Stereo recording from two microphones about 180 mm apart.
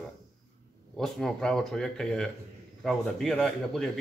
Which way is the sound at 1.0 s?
Centre (ahead or behind).